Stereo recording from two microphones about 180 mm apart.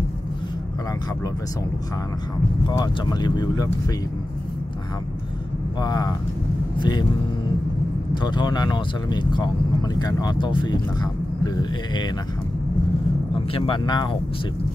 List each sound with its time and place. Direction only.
2.7 s speech: 25° left (ahead or behind)
5.8 s speech: 20° left (ahead or behind)
8.1 s speech: 25° left (ahead or behind)
13.3 s speech: 30° left (ahead or behind)